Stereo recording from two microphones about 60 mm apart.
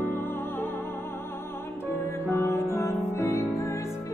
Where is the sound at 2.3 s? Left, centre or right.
Left.